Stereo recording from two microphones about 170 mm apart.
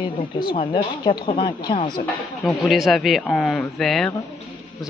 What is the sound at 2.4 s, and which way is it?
A man's voice, centre (ahead or behind).